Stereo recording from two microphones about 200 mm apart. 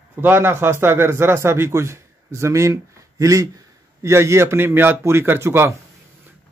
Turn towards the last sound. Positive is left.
turn(degrees=-10)  # may be behind; listen again after turning